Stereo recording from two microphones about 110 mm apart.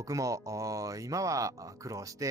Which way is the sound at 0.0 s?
30° right (ahead or behind).